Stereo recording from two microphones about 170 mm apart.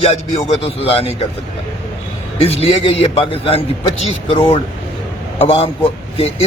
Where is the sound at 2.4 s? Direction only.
35° left (ahead or behind).